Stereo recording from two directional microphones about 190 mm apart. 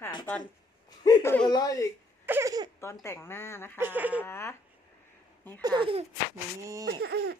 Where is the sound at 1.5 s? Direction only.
20° left (ahead or behind).